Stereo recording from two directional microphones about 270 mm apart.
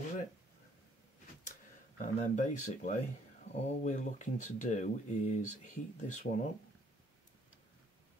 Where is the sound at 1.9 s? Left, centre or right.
Left.